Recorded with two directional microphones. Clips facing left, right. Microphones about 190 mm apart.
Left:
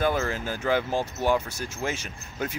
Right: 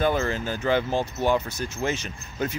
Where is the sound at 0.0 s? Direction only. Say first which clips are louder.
Right 2 dB; 5° left (ahead or behind).